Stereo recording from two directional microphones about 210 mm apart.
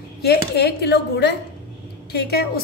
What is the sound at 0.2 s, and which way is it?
A woman's voice, 50° left (ahead or behind).